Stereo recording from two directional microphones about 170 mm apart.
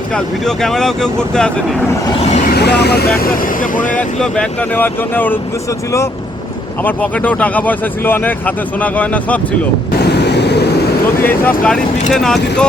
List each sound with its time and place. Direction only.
0.4 s speech: centre (ahead or behind)
2.1 s speech: 40° left (ahead or behind)
2.5 s speech: 75° left (ahead or behind)
3.6 s speech: 50° left (ahead or behind)
3.9 s speech: 5° left (ahead or behind)
6.8 s speech: 10° left (ahead or behind)
10.0 s waves: 80° left
11.2 s speech: 10° left (ahead or behind)